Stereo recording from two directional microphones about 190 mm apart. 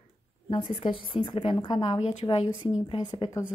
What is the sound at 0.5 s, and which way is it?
A woman's voice, 30° left (ahead or behind).